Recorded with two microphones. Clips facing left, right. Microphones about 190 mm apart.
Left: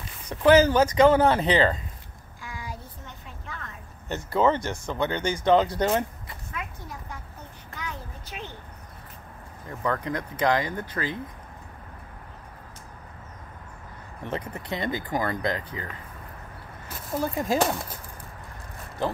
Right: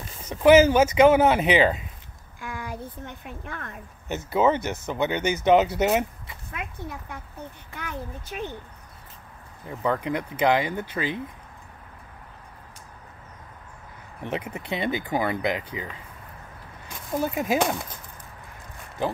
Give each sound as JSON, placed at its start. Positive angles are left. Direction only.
{"t": 0.3, "sound": "speech", "side_deg": -10}
{"t": 2.4, "sound": "a sound", "side_deg": -55}
{"t": 4.3, "sound": "speech", "side_deg": -10}
{"t": 6.5, "sound": "a sound", "side_deg": -65}
{"t": 7.7, "sound": "child singing", "side_deg": -55}
{"t": 9.7, "sound": "speech", "side_deg": -10}
{"t": 10.3, "sound": "speech", "side_deg": -25}
{"t": 10.7, "sound": "speech", "side_deg": -10}
{"t": 14.2, "sound": "speech", "side_deg": -10}
{"t": 14.6, "sound": "speech", "side_deg": -25}
{"t": 17.2, "sound": "speech", "side_deg": -5}